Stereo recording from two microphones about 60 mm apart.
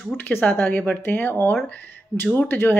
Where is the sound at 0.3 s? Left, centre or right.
Left.